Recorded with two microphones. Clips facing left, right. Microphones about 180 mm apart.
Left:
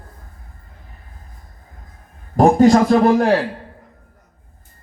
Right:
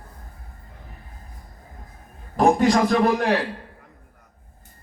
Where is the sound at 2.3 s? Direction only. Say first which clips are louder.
Left 6 dB; 40° left (ahead or behind).